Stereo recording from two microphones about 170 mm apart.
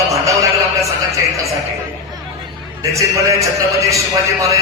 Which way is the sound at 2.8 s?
20° right (ahead or behind).